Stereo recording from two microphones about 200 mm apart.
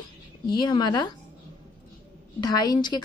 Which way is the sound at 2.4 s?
20° left (ahead or behind).